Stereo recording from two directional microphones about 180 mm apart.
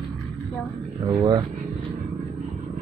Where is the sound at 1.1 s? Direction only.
25° right (ahead or behind).